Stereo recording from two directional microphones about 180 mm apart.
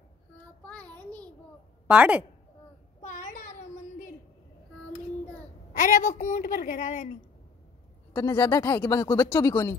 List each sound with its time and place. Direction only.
0.7 s child singing: 5° left (ahead or behind)
1.9 s a woman's voice: 10° right (ahead or behind)
3.0 s a sound: 45° left (ahead or behind)
5.7 s a woman's voice: 45° left (ahead or behind)
8.3 s speech: 20° left (ahead or behind)